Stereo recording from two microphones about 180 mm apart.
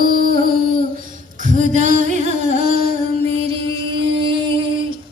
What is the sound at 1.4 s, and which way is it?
Singing, 45° right (ahead or behind).